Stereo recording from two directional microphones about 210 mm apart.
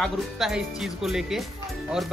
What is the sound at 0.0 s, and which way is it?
Speech, centre (ahead or behind).